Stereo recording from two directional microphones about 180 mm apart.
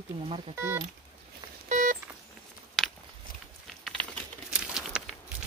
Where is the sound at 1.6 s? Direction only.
45° right (ahead or behind).